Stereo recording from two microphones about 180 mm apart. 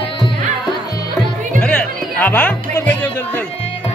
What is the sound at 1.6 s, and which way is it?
Music, 5° left (ahead or behind).